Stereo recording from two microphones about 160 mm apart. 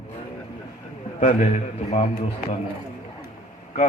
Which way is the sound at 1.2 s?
50° left (ahead or behind).